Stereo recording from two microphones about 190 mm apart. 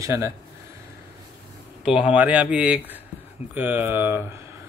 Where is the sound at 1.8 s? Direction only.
5° right (ahead or behind).